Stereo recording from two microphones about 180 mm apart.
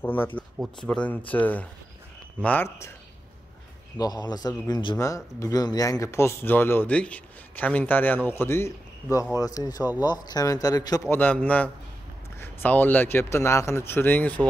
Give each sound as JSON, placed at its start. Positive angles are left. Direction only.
{"t": 0.0, "sound": "speech", "side_deg": 10}
{"t": 4.0, "sound": "a man's voice", "side_deg": 20}